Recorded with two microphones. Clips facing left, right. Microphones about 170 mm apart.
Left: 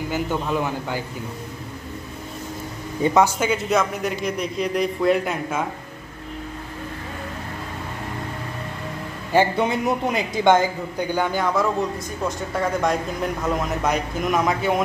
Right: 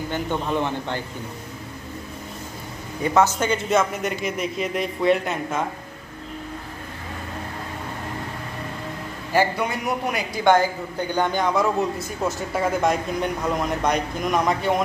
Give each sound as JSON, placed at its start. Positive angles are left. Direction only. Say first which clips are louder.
{"t": 0.1, "sound": "a man's voice", "louder": "left 1 dB", "side_deg": 5}
{"t": 3.0, "sound": "a man's voice", "louder": "left 1 dB", "side_deg": 15}
{"t": 9.3, "sound": "a man's voice", "louder": "left 3 dB", "side_deg": 25}
{"t": 11.1, "sound": "a man's voice", "louder": "right 1 dB", "side_deg": 5}